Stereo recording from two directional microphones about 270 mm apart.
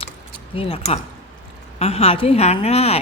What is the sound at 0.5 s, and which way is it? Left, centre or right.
Speech, left.